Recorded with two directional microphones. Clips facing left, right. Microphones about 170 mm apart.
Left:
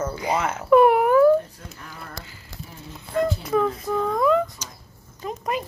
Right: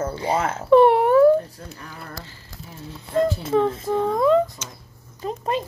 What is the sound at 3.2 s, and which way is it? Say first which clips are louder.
Speech: right 2 dB; 30° right (ahead or behind).